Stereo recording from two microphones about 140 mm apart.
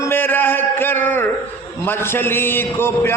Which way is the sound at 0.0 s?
15° left (ahead or behind).